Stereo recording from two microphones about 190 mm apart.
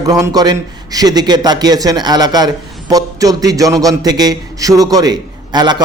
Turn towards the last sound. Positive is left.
turn(degrees=-20)  # may be behind; listen again after turning